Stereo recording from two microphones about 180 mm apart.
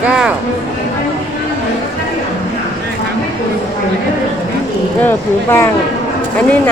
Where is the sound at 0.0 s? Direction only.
5° right (ahead or behind).